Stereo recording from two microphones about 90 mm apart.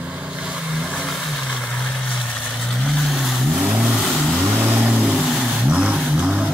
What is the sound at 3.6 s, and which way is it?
Vehicle, 10° right (ahead or behind).